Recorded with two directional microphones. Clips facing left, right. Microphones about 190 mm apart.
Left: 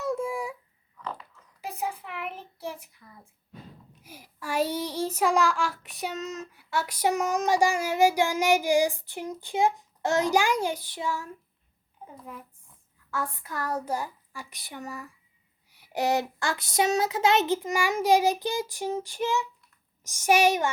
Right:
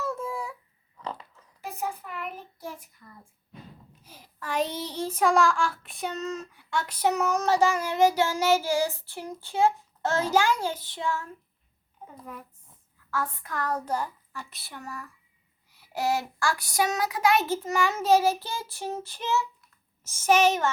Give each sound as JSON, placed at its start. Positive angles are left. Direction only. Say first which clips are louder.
{"t": 0.0, "sound": "a sound", "louder": "left 3 dB", "side_deg": 10}
{"t": 4.0, "sound": "a child's voice", "louder": "left 1 dB", "side_deg": 10}
{"t": 13.5, "sound": "speech", "louder": "right 1 dB", "side_deg": 10}